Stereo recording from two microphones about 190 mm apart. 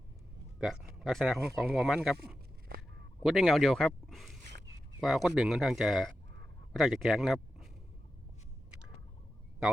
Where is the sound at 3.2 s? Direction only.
Centre (ahead or behind).